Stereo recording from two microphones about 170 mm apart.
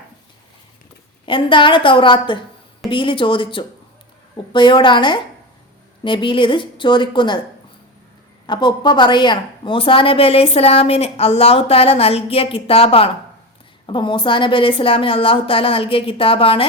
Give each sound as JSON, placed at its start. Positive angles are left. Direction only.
{"t": 1.2, "sound": "a woman's voice", "side_deg": 30}
{"t": 8.4, "sound": "a woman's voice", "side_deg": 25}